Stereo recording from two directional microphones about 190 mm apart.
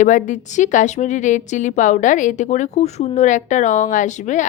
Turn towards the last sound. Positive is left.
turn(degrees=40)  # may be behind; listen again after turning